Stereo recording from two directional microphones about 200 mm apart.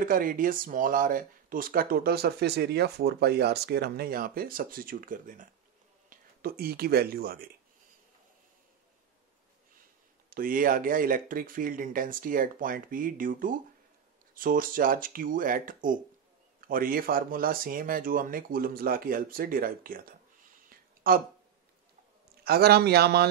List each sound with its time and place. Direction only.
0.0 s speech: 45° right (ahead or behind)
10.3 s speech: 45° right (ahead or behind)
20.7 s a sound: 45° right (ahead or behind)
22.4 s speech: 50° right (ahead or behind)